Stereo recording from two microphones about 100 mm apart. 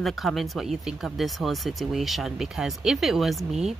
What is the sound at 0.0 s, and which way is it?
Speech, centre (ahead or behind).